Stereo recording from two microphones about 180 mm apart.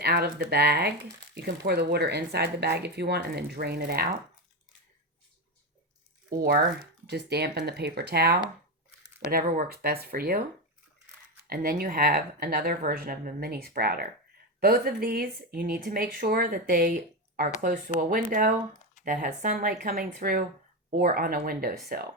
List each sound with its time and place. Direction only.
0.0 s speech: 65° right (ahead or behind)
6.3 s speech: 60° right (ahead or behind)
11.4 s speech: 55° right (ahead or behind)